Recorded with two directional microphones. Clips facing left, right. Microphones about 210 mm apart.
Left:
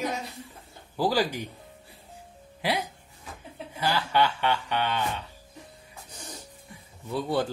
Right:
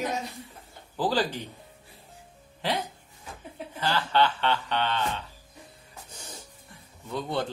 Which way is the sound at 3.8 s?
10° left (ahead or behind).